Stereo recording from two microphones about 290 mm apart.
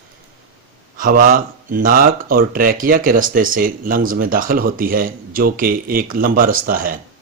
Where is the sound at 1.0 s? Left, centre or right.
Right.